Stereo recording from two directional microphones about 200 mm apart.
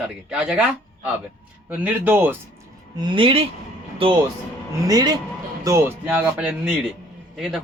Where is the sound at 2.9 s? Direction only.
25° right (ahead or behind).